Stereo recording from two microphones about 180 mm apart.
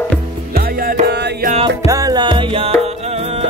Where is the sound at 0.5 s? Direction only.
55° right (ahead or behind).